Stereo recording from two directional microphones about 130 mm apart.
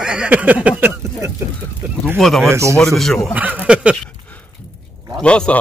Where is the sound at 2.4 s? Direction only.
20° right (ahead or behind).